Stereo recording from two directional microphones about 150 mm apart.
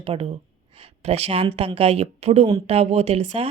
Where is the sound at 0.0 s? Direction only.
40° right (ahead or behind).